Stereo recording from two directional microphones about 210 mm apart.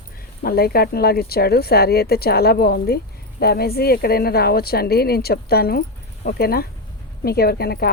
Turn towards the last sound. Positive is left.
turn(degrees=50)  # may be behind; listen again after turning